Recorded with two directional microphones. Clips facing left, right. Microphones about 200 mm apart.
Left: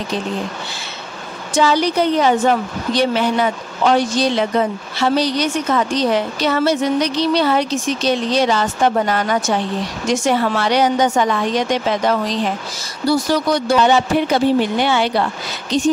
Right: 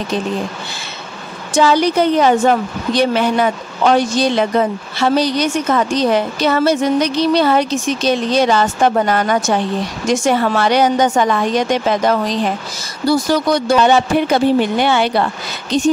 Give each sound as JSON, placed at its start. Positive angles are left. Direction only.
{"t": 1.5, "sound": "a woman's voice", "side_deg": -50}